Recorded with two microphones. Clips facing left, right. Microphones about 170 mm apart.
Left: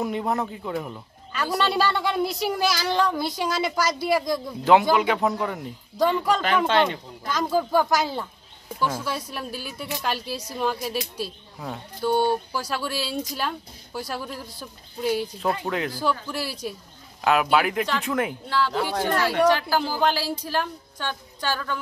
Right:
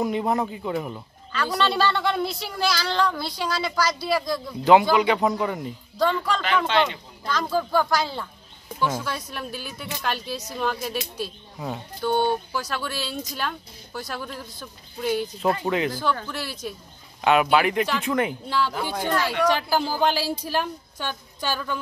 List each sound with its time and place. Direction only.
0.0 s speech: centre (ahead or behind)
1.6 s speech: 10° left (ahead or behind)
4.9 s speech: centre (ahead or behind)
5.9 s speech: 15° left (ahead or behind)
6.7 s speech: 45° left (ahead or behind)
7.2 s speech: 15° left (ahead or behind); by 18.3 s centre (ahead or behind)
18.5 s a woman's voice: 15° right (ahead or behind)